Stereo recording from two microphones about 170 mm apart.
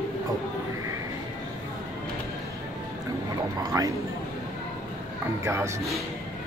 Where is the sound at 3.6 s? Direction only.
20° right (ahead or behind).